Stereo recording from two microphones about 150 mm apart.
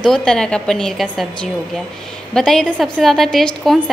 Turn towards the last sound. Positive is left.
turn(degrees=0)  # may be behind; listen again after turning